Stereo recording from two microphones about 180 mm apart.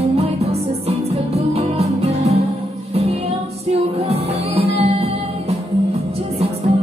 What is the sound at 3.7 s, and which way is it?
Music, 35° right (ahead or behind).